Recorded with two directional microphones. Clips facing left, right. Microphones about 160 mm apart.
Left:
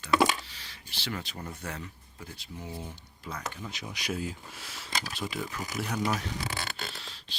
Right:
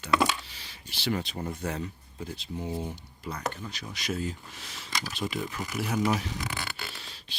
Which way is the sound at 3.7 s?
15° left (ahead or behind).